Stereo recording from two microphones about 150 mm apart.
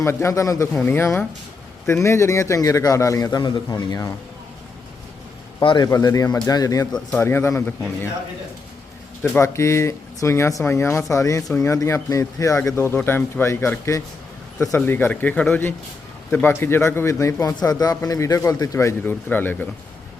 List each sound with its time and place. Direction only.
0.0 s a man's voice: 20° left (ahead or behind)
5.6 s speech: 30° left (ahead or behind)
6.9 s a man's voice: 15° left (ahead or behind)
9.2 s a man's voice: 15° left (ahead or behind)